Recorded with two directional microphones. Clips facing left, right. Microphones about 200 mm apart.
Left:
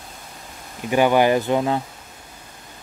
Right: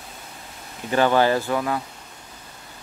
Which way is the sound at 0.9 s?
15° left (ahead or behind).